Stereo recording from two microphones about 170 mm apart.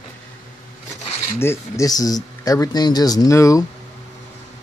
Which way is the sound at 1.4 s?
15° left (ahead or behind).